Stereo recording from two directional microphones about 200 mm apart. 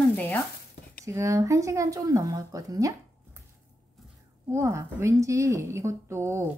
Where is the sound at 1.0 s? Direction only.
15° right (ahead or behind).